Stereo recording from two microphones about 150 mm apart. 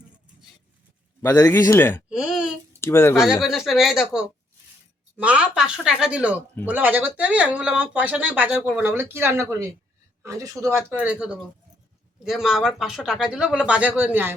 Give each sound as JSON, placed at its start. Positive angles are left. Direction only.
{"t": 1.4, "sound": "speech", "side_deg": 25}
{"t": 2.0, "sound": "a sound", "side_deg": -5}
{"t": 2.8, "sound": "speech", "side_deg": 15}
{"t": 3.4, "sound": "speech", "side_deg": 0}